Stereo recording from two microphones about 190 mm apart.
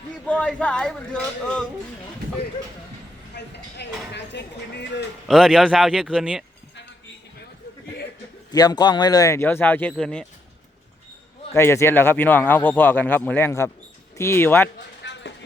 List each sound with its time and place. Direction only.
0.3 s speech: 5° left (ahead or behind)
3.3 s speech: 65° left (ahead or behind)
5.3 s speech: centre (ahead or behind)
8.5 s speech: 20° left (ahead or behind)
11.5 s speech: 15° left (ahead or behind)
15.0 s a sound: 65° left (ahead or behind)